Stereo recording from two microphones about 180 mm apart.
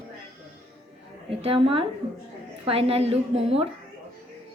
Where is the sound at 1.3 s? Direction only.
30° right (ahead or behind).